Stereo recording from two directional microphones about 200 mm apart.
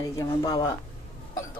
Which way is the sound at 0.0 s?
20° left (ahead or behind).